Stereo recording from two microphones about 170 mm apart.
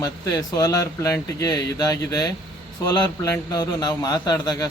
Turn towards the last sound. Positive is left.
turn(degrees=25)  # may be behind; listen again after turning